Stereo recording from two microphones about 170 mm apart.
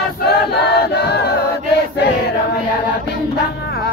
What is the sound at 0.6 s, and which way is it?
Choir, 75° left (ahead or behind).